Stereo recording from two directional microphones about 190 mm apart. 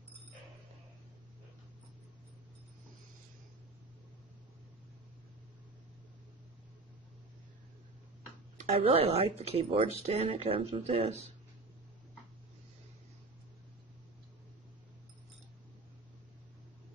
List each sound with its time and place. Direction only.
8.5 s speech: 35° right (ahead or behind)